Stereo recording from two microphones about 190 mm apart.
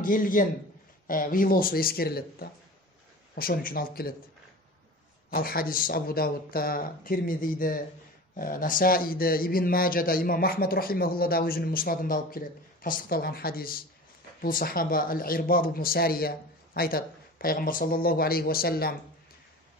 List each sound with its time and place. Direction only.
0.0 s speech: 45° left (ahead or behind)
5.3 s speech: 50° left (ahead or behind)